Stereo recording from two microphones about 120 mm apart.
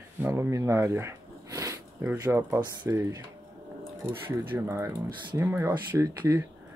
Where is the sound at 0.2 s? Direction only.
25° right (ahead or behind).